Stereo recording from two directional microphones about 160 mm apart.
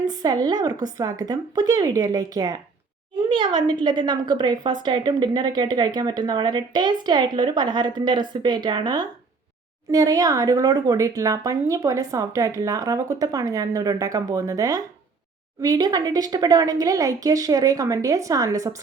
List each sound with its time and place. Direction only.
0.0 s a woman's voice: 25° right (ahead or behind)